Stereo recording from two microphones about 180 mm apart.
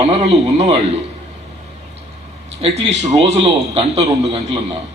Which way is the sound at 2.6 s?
35° right (ahead or behind).